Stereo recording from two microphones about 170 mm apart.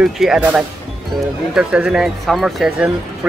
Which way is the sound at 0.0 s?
5° right (ahead or behind).